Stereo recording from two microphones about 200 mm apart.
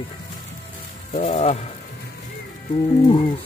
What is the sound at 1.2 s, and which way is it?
Speech, 30° left (ahead or behind).